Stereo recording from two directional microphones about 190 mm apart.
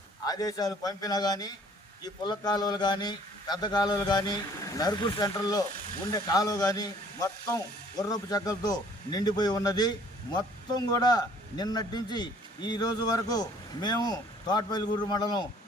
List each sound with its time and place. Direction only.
0.3 s a man's voice: 20° left (ahead or behind)